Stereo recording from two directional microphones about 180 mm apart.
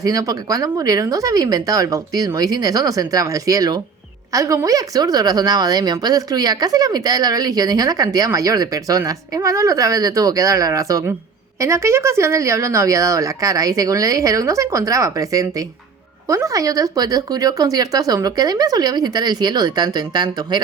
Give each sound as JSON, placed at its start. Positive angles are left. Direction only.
{"t": 0.0, "sound": "a woman's voice", "side_deg": -20}